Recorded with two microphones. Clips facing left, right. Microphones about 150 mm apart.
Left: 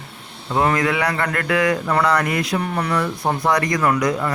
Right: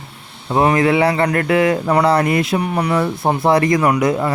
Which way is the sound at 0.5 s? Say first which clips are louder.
Right 5 dB; 20° right (ahead or behind).